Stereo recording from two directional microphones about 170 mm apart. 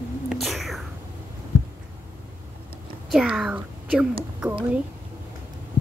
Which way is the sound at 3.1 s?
Centre (ahead or behind).